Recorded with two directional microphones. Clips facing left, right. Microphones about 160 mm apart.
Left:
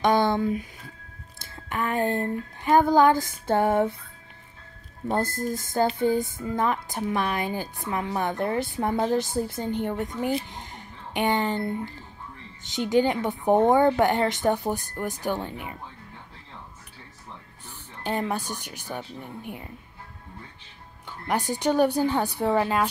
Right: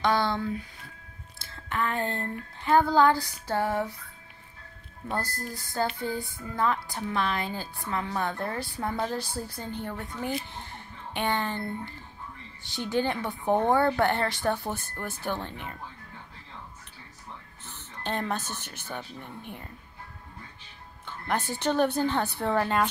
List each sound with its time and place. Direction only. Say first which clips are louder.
0.0 s a woman's voice: left 5 dB; 20° left (ahead or behind)
5.1 s a woman's voice: left 7 dB; 20° left (ahead or behind)
17.6 s speech: left 3 dB; 10° left (ahead or behind)
21.3 s a woman's voice: left 3 dB; 15° left (ahead or behind)